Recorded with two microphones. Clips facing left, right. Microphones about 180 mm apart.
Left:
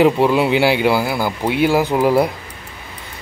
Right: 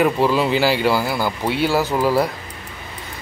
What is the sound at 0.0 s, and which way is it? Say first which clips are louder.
Speech: left 3 dB; 20° left (ahead or behind).